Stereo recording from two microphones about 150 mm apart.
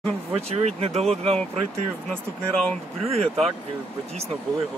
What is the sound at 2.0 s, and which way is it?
Speech, 5° left (ahead or behind).